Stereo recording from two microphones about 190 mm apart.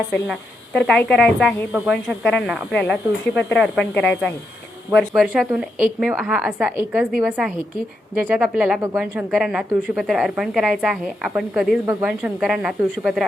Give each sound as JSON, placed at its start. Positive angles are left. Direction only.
{"t": 0.3, "sound": "a woman's voice", "side_deg": 0}